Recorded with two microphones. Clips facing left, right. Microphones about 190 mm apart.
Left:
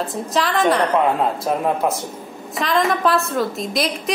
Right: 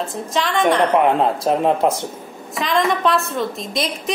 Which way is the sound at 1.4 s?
30° right (ahead or behind).